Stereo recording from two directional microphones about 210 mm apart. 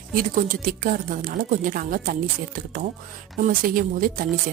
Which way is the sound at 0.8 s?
40° right (ahead or behind).